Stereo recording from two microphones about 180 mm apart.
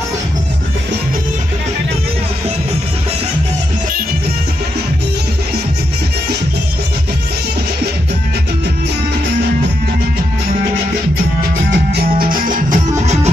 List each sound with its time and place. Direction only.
11.7 s music: 60° right (ahead or behind); by 13.3 s 40° right (ahead or behind)